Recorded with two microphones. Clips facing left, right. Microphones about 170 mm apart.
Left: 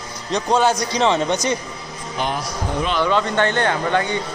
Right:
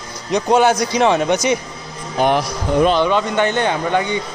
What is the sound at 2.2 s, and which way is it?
Speech, 45° right (ahead or behind).